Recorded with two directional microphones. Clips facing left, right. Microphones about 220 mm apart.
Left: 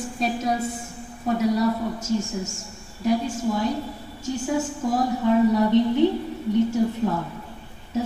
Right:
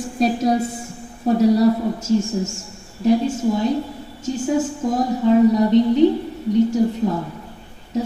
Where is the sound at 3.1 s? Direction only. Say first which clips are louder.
Right 6 dB; 25° right (ahead or behind).